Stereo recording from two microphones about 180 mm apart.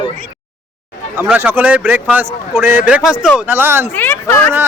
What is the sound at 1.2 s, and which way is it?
Speech, 10° right (ahead or behind).